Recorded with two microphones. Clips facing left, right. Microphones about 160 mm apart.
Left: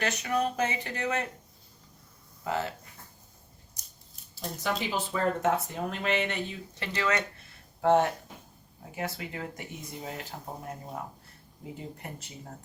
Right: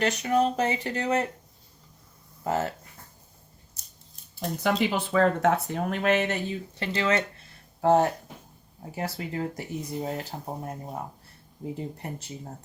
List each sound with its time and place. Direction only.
0.0 s speech: 30° right (ahead or behind)
2.4 s speech: 45° right (ahead or behind)
4.4 s speech: 60° right (ahead or behind); by 11.0 s 30° right (ahead or behind)